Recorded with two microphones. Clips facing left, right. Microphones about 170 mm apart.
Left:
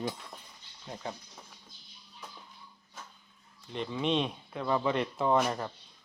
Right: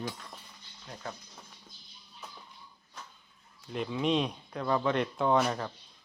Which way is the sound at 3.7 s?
5° right (ahead or behind).